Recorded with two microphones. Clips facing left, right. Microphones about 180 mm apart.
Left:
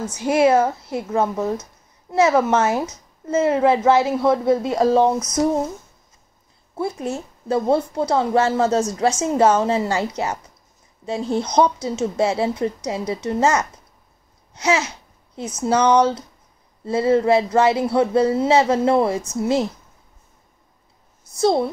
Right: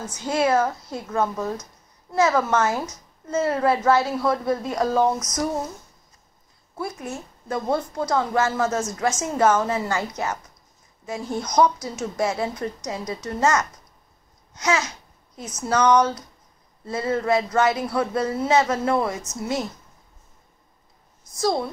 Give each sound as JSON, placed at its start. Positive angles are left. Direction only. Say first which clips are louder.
{"t": 0.2, "sound": "a woman's voice", "louder": "left 5 dB", "side_deg": 20}
{"t": 6.7, "sound": "a woman's voice", "louder": "left 6 dB", "side_deg": 25}
{"t": 14.5, "sound": "babbling", "louder": "left 3 dB", "side_deg": 30}
{"t": 15.3, "sound": "a woman's voice", "louder": "left 4 dB", "side_deg": 30}
{"t": 21.4, "sound": "a woman's voice", "louder": "left 5 dB", "side_deg": 25}